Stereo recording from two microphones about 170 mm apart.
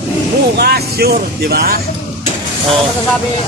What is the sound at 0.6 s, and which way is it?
Speech, 70° right (ahead or behind).